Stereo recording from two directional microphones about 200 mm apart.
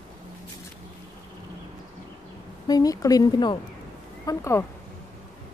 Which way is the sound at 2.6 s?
20° left (ahead or behind).